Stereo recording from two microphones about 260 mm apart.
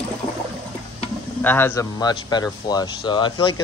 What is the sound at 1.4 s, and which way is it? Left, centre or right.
Speech, centre.